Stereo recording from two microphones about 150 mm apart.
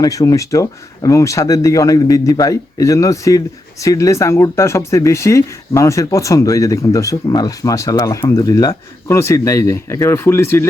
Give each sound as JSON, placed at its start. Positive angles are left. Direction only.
{"t": 0.0, "sound": "speech", "side_deg": 25}